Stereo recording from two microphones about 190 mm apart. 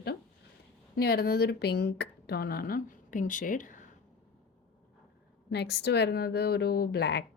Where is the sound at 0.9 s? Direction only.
55° left (ahead or behind).